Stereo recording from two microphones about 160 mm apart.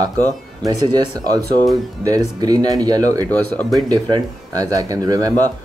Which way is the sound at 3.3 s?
10° left (ahead or behind).